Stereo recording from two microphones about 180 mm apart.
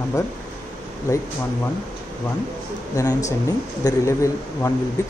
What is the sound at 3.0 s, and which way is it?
Speech, 15° left (ahead or behind).